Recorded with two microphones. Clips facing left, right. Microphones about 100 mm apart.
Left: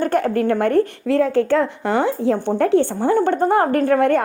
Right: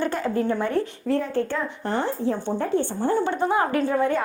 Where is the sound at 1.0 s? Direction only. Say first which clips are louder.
Left 7 dB; 90° left.